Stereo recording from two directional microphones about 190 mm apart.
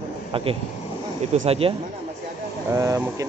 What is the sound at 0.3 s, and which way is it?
Speech, 30° right (ahead or behind).